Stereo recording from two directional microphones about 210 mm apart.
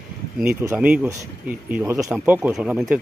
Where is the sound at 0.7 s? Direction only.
5° right (ahead or behind).